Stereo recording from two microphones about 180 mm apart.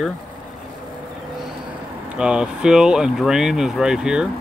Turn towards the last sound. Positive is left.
turn(degrees=-5)  # may be behind; listen again after turning